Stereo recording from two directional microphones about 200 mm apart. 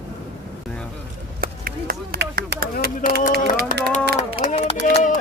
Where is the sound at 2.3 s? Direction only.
45° right (ahead or behind).